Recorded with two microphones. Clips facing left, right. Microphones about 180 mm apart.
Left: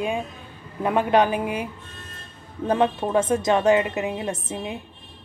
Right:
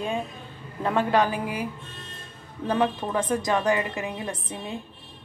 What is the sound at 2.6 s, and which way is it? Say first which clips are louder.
A woman's voice: left 3 dB; 25° left (ahead or behind).